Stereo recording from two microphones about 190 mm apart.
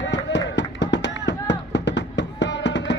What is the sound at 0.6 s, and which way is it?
Music, 70° left (ahead or behind).